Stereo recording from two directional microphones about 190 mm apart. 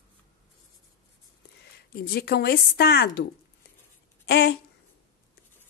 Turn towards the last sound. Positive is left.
turn(degrees=60)  # may be behind; listen again after turning